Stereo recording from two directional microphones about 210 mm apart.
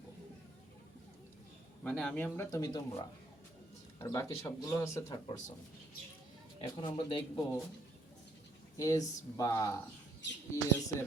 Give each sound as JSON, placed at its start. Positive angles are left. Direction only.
{"t": 1.8, "sound": "speech", "side_deg": 5}
{"t": 4.0, "sound": "speech", "side_deg": 15}
{"t": 6.6, "sound": "speech", "side_deg": 25}
{"t": 8.8, "sound": "speech", "side_deg": 15}